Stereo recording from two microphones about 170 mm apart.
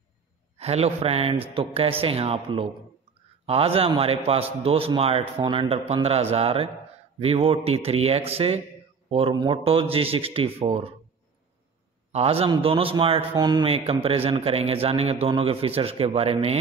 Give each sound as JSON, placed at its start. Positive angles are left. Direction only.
{"t": 0.6, "sound": "a man's voice", "side_deg": -35}
{"t": 12.1, "sound": "a man's voice", "side_deg": -35}